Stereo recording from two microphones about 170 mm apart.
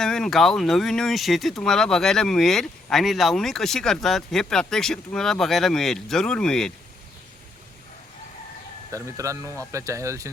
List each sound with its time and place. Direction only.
0.0 s speech: 5° left (ahead or behind)
8.9 s speech: 15° right (ahead or behind)